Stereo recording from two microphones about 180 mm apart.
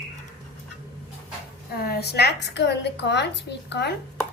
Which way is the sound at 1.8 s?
60° left (ahead or behind).